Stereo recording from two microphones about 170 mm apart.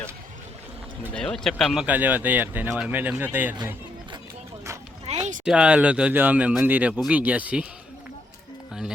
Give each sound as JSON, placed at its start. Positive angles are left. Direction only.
{"t": 1.1, "sound": "speech", "side_deg": 5}
{"t": 5.1, "sound": "a sound", "side_deg": -40}
{"t": 5.5, "sound": "speech", "side_deg": -5}